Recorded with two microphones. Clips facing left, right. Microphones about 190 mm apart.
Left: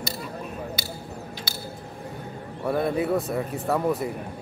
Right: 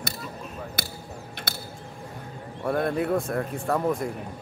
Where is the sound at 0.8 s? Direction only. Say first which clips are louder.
Even; 55° right (ahead or behind).